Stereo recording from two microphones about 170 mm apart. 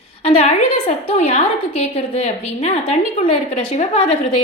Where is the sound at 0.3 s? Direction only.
35° left (ahead or behind).